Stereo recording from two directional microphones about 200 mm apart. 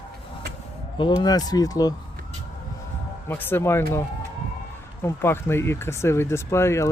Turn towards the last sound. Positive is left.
turn(degrees=15)  # may be behind; listen again after turning